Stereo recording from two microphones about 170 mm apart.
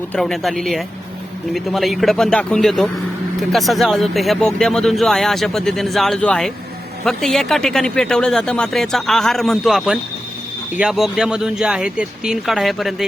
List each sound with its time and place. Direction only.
0.1 s speech: centre (ahead or behind)